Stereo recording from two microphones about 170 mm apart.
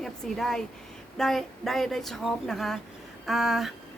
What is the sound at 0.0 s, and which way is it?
A woman's voice, centre (ahead or behind).